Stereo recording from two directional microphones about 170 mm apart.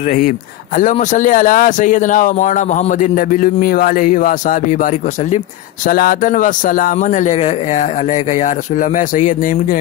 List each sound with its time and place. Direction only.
0.7 s a man's voice: 45° left (ahead or behind)